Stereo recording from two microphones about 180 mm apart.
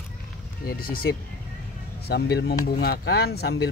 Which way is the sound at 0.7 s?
55° left (ahead or behind).